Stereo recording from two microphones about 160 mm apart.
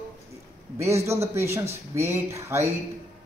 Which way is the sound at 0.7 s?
15° right (ahead or behind).